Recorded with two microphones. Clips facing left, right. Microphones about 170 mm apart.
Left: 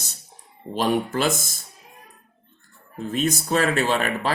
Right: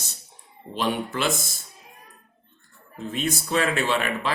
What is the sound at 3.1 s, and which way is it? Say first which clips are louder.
Speech: left 4 dB; 45° left (ahead or behind).